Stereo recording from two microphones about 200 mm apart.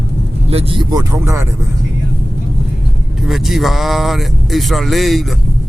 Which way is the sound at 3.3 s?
Centre (ahead or behind).